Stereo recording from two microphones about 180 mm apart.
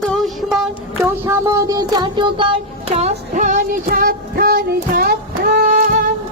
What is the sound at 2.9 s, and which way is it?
Child singing, 45° right (ahead or behind).